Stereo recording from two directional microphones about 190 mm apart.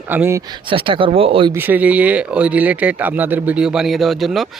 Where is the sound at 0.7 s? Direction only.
25° right (ahead or behind).